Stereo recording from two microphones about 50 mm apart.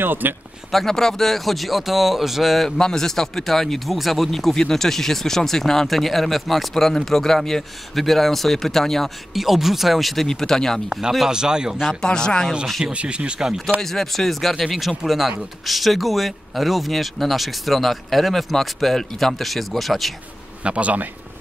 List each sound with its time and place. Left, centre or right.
0.0 s speech: right
0.7 s speech: centre
2.8 s speech: centre
9.3 s speech: centre
10.2 s speech: centre
10.9 s a man's voice: centre
11.9 s speech: centre
12.8 s speech: right
13.7 s speech: centre
20.6 s speech: right